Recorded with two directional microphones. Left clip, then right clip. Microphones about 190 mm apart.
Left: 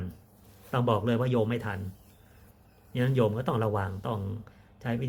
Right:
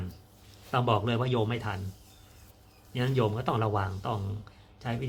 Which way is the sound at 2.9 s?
5° left (ahead or behind).